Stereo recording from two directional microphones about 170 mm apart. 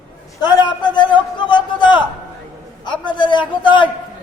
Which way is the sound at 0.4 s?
25° left (ahead or behind).